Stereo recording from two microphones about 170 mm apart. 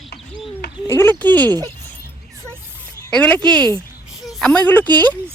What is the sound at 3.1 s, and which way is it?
Speech, 10° left (ahead or behind).